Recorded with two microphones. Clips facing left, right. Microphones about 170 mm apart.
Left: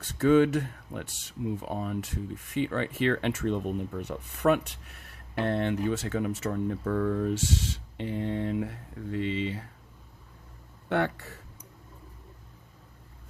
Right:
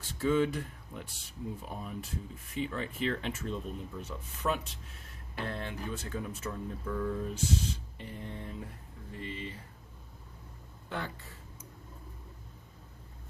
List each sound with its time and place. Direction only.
0.0 s speech: 70° left (ahead or behind)
10.8 s speech: 70° left (ahead or behind)